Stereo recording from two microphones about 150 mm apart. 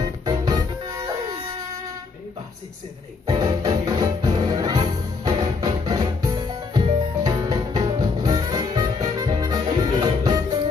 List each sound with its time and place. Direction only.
0.2 s music: 25° right (ahead or behind)
3.3 s music: 25° right (ahead or behind)